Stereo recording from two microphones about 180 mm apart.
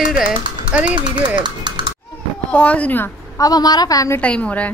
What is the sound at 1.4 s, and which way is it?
Speech, 25° right (ahead or behind).